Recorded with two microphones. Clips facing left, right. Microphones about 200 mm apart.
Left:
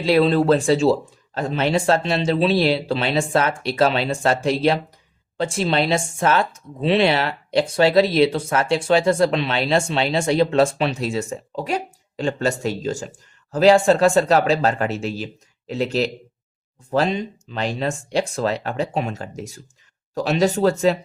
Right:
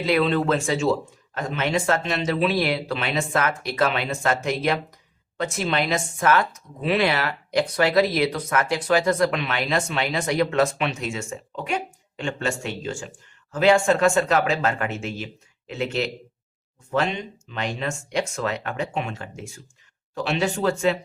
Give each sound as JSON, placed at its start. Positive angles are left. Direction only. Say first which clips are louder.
{"t": 0.0, "sound": "speech", "louder": "left 4 dB", "side_deg": 30}